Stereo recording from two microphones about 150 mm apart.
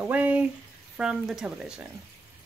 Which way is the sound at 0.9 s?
5° right (ahead or behind).